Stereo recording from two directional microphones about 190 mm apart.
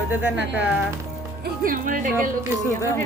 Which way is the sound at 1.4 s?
45° right (ahead or behind).